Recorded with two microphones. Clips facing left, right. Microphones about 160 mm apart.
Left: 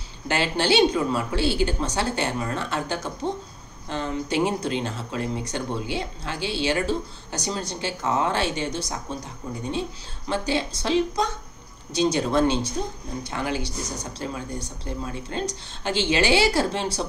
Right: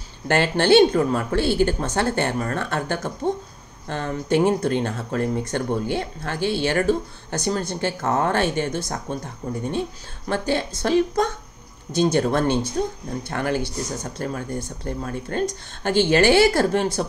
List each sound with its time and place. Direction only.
0.3 s speech: 55° right (ahead or behind)